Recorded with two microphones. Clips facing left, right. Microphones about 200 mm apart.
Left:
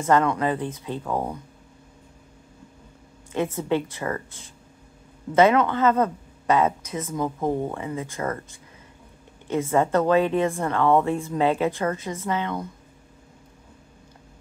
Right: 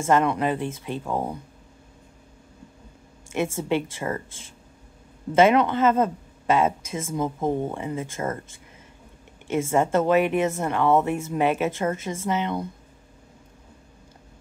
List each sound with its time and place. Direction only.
0.0 s speech: 20° right (ahead or behind)
1.0 s speech: 10° right (ahead or behind)
3.3 s speech: 25° right (ahead or behind)
9.5 s speech: 25° right (ahead or behind)
10.7 s speech: 10° right (ahead or behind)
11.1 s speech: 20° right (ahead or behind)